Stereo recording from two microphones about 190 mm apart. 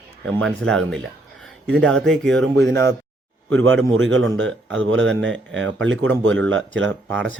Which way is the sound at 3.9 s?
80° right.